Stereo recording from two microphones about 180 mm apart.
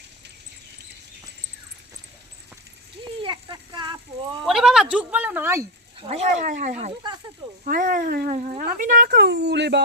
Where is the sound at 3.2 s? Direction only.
25° right (ahead or behind).